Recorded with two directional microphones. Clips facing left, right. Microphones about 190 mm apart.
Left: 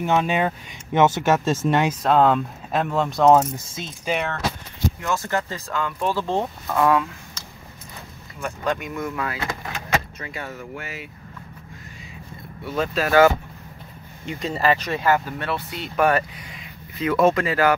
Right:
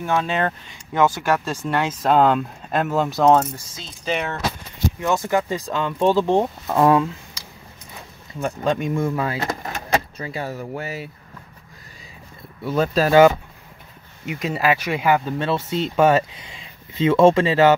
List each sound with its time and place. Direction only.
0.0 s speech: 20° left (ahead or behind)
0.9 s speech: 20° left (ahead or behind)
2.0 s speech: centre (ahead or behind)
3.5 s speech: 20° left (ahead or behind)
4.0 s speech: 5° left (ahead or behind)
5.0 s speech: 15° right (ahead or behind)
6.8 s speech: 30° right (ahead or behind)
8.4 s speech: 30° right (ahead or behind)
9.5 s vehicle: 40° right (ahead or behind)
12.6 s speech: 40° right (ahead or behind)
14.2 s speech: 10° right (ahead or behind); by 17.7 s 25° right (ahead or behind)